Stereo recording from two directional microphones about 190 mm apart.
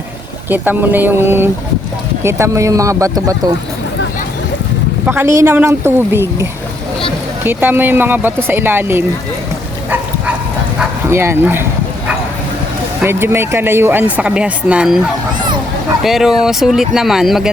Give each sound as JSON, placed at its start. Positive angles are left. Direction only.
{"t": 0.5, "sound": "speech", "side_deg": -10}
{"t": 5.0, "sound": "speech", "side_deg": -10}
{"t": 10.8, "sound": "bow-wow", "side_deg": -10}
{"t": 13.0, "sound": "speech", "side_deg": -15}
{"t": 16.0, "sound": "speech", "side_deg": 0}